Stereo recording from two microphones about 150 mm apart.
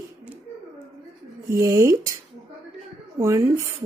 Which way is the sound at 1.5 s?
20° right (ahead or behind).